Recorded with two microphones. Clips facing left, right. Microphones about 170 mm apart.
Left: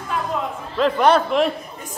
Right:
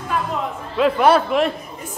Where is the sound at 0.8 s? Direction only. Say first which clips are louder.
Right 1 dB; 5° right (ahead or behind).